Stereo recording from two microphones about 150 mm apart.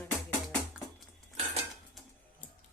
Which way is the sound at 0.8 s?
5° right (ahead or behind).